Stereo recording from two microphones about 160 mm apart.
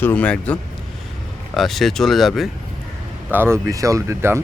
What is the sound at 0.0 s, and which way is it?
Speech, 10° left (ahead or behind).